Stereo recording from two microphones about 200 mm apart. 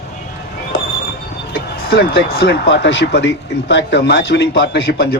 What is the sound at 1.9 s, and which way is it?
Speech, 50° left (ahead or behind).